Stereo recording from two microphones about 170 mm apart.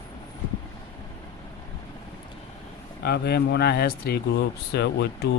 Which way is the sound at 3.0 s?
70° left (ahead or behind).